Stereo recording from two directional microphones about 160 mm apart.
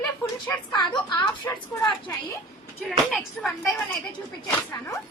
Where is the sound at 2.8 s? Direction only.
Centre (ahead or behind).